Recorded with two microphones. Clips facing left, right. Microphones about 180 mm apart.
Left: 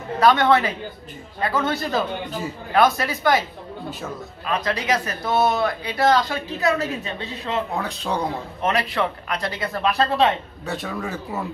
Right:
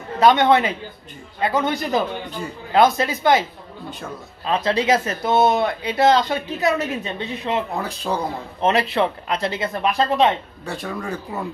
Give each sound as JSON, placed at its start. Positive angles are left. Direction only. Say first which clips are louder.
{"t": 0.2, "sound": "a man's voice", "louder": "right 2 dB", "side_deg": -20}
{"t": 4.5, "sound": "speech", "louder": "right 4 dB", "side_deg": -25}
{"t": 7.7, "sound": "speech", "louder": "right 1 dB", "side_deg": 0}
{"t": 8.5, "sound": "speech", "louder": "right 5 dB", "side_deg": -25}
{"t": 10.6, "sound": "speech", "louder": "even", "side_deg": 0}